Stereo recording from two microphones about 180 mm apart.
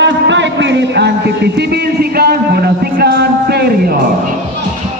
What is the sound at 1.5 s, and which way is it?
Music, 65° right (ahead or behind).